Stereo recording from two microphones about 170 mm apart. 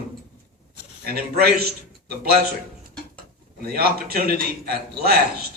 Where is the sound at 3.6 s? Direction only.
65° right (ahead or behind).